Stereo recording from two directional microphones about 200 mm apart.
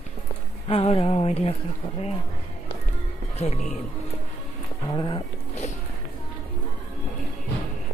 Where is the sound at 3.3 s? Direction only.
35° left (ahead or behind).